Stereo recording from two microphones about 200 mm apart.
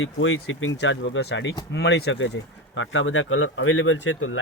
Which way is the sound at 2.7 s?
75° left (ahead or behind).